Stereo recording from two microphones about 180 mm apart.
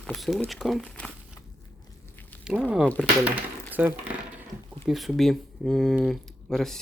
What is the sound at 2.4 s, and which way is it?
Speech, 5° right (ahead or behind).